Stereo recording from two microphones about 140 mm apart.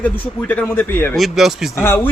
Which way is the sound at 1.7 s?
15° left (ahead or behind).